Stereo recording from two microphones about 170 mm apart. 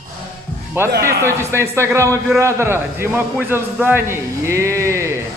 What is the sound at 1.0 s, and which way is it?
A man's voice, 15° right (ahead or behind).